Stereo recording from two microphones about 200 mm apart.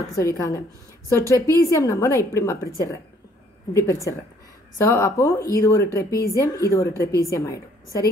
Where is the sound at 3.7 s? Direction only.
15° left (ahead or behind).